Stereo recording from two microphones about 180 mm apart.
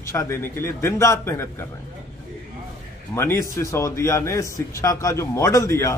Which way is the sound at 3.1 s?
15° left (ahead or behind).